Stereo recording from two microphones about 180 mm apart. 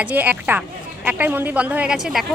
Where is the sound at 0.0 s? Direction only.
10° right (ahead or behind).